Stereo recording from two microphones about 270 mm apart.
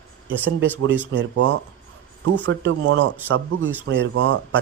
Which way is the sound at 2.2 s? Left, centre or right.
Right.